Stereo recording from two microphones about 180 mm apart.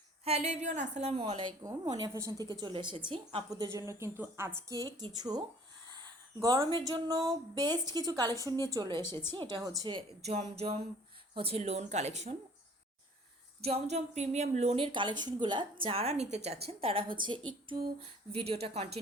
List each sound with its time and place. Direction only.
0.3 s a woman's voice: 35° right (ahead or behind); by 10.2 s 20° right (ahead or behind)
10.2 s a woman's voice: 35° right (ahead or behind)
13.6 s a woman's voice: 35° right (ahead or behind)
17.7 s a woman's voice: 20° right (ahead or behind)
18.3 s a woman's voice: 35° right (ahead or behind)